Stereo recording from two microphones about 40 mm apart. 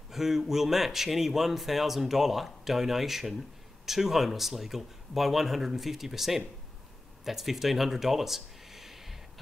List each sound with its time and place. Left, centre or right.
0.1 s speech: centre